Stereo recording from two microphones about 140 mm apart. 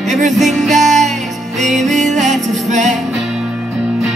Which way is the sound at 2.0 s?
60° right (ahead or behind).